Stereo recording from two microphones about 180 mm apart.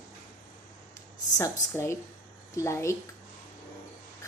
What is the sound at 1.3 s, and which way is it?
Speech, 15° left (ahead or behind).